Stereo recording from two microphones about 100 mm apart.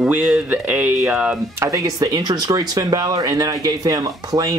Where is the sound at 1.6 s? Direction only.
30° right (ahead or behind).